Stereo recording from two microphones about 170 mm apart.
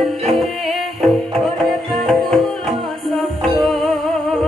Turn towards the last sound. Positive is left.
turn(degrees=0)  # may be behind; listen again after turning